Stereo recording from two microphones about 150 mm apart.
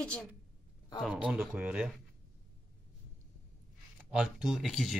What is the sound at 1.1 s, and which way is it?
Speech, 10° right (ahead or behind).